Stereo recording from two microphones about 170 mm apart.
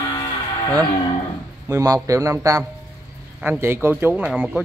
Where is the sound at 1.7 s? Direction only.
20° right (ahead or behind).